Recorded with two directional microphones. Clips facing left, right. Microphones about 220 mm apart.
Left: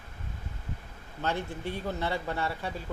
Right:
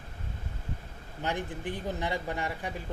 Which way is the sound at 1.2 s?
15° right (ahead or behind).